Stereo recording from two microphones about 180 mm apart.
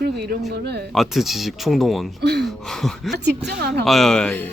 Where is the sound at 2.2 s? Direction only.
65° right (ahead or behind).